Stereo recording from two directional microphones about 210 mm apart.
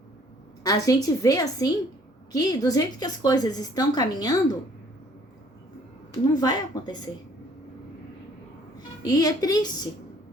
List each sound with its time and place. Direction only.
0.6 s a woman's voice: 15° left (ahead or behind)
6.3 s a woman's voice: 20° left (ahead or behind)
9.0 s a woman's voice: 15° left (ahead or behind)